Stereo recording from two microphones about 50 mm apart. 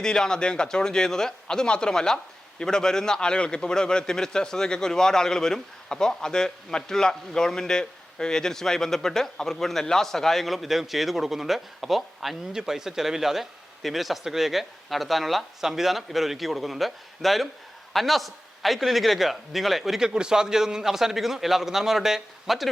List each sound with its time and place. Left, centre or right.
0.0 s a man's voice: centre
20.1 s a man's voice: centre